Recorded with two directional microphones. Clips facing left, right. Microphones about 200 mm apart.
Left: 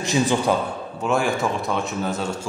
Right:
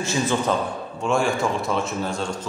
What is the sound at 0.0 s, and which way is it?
Speech, 15° left (ahead or behind).